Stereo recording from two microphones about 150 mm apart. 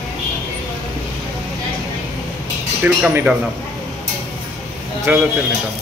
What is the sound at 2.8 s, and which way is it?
Speech, 10° right (ahead or behind).